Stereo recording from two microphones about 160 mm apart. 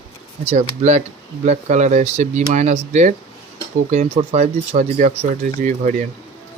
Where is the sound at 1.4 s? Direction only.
45° right (ahead or behind).